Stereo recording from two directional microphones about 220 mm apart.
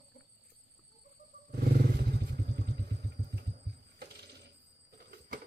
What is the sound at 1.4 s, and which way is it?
Vehicle, 40° right (ahead or behind).